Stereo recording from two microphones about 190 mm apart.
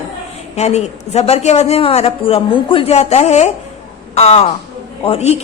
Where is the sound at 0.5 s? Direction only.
35° left (ahead or behind).